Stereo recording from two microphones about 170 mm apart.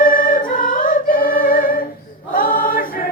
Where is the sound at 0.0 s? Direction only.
55° left (ahead or behind).